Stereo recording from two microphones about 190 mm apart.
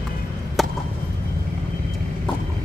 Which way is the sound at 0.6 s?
Centre (ahead or behind).